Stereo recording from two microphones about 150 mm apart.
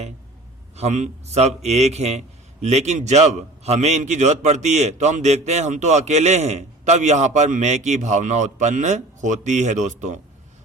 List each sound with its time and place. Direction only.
0.8 s a man's voice: 50° right (ahead or behind)